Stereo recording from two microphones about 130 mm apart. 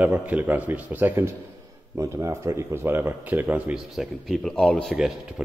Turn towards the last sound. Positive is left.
turn(degrees=5)  # may be behind; listen again after turning